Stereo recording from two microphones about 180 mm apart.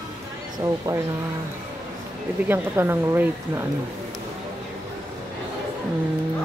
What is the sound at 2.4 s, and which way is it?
Speech, 10° right (ahead or behind).